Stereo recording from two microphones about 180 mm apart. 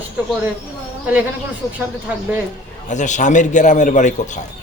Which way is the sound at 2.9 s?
45° left (ahead or behind).